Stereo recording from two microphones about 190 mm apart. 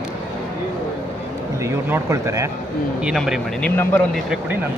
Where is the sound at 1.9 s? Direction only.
15° right (ahead or behind).